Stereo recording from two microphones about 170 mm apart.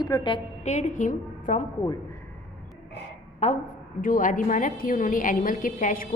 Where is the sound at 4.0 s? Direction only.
55° left (ahead or behind).